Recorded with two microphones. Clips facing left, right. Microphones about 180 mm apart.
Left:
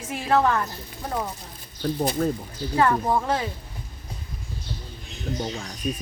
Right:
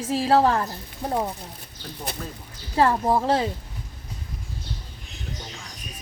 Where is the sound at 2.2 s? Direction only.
50° left (ahead or behind).